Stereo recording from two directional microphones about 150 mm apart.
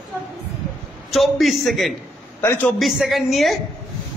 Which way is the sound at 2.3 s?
15° left (ahead or behind).